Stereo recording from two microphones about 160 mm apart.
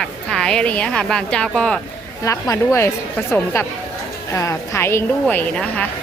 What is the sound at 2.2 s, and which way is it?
A woman's voice, 20° left (ahead or behind).